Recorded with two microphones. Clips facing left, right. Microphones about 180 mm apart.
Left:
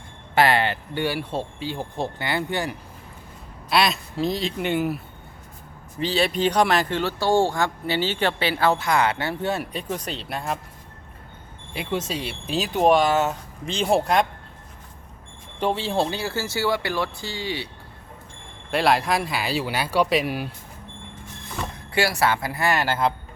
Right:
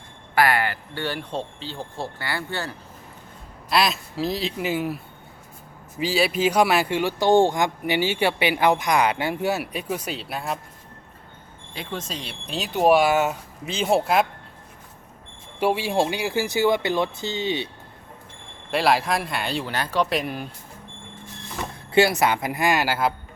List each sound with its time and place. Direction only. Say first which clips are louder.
0.3 s speech: left 1 dB; 25° left (ahead or behind)
1.0 s speech: left 2 dB; 10° left (ahead or behind)
3.7 s speech: left 1 dB; centre (ahead or behind)
11.7 s speech: left 5 dB; 5° left (ahead or behind)
15.6 s speech: right 2 dB; 10° right (ahead or behind)
18.7 s speech: even; centre (ahead or behind)
21.9 s speech: right 3 dB; 20° right (ahead or behind)